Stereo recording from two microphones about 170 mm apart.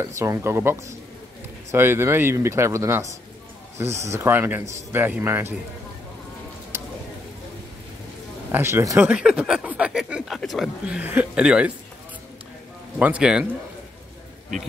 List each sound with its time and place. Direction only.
0.0 s speech: 15° right (ahead or behind)
6.7 s a sound: 15° right (ahead or behind)
8.5 s speech: 15° right (ahead or behind)
13.0 s speech: 5° right (ahead or behind)